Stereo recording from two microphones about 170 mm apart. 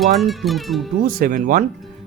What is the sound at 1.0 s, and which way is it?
Speech, 55° right (ahead or behind).